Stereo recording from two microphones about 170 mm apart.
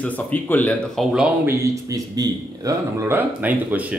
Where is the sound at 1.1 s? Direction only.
10° right (ahead or behind).